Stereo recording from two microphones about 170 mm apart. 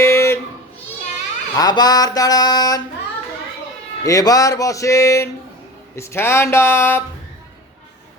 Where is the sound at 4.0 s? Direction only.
20° left (ahead or behind).